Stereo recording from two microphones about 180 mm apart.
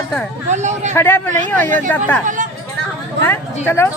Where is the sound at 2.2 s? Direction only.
45° right (ahead or behind).